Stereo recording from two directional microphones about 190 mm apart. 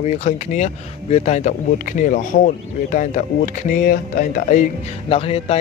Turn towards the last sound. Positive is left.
turn(degrees=30)  # may be behind; listen again after turning